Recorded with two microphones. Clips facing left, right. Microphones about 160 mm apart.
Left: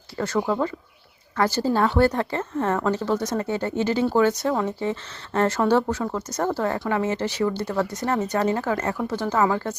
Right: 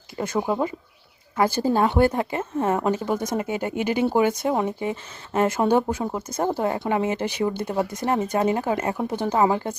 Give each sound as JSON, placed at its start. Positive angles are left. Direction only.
{"t": 0.2, "sound": "speech", "side_deg": -15}